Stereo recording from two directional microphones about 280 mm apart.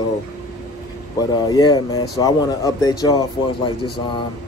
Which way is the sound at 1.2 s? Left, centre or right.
Centre.